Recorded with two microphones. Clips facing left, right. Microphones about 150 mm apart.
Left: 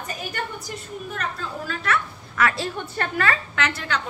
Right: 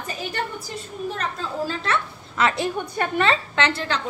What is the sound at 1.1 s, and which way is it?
A woman's voice, 30° right (ahead or behind).